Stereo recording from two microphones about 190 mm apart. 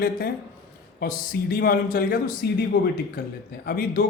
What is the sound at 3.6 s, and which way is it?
Speech, 50° left (ahead or behind).